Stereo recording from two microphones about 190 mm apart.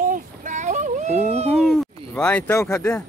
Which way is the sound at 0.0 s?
40° right (ahead or behind).